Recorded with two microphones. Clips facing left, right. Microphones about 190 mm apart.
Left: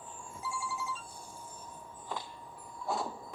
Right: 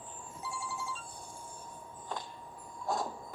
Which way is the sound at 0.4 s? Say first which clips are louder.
Left 2 dB; 20° right (ahead or behind).